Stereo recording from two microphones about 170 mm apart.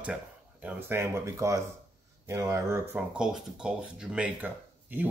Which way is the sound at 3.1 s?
5° right (ahead or behind).